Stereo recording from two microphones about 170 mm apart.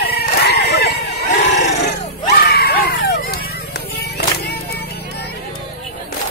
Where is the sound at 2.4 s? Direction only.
65° left (ahead or behind).